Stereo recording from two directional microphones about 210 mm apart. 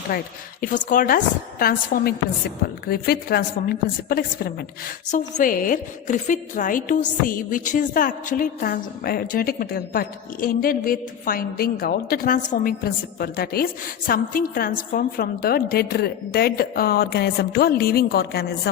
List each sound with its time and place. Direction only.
0.1 s a woman's voice: 45° left (ahead or behind)